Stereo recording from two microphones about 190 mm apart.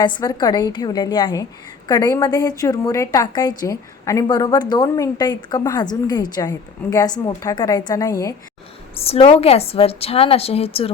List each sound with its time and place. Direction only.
0.0 s a woman's voice: 25° left (ahead or behind)
9.0 s a woman's voice: 30° left (ahead or behind)